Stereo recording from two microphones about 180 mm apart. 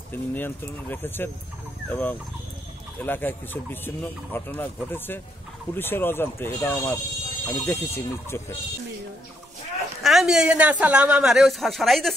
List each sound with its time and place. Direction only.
0.1 s speech: 10° left (ahead or behind)
10.0 s a man's voice: centre (ahead or behind)